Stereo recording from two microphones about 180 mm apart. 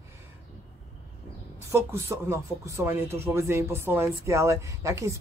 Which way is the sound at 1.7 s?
15° right (ahead or behind).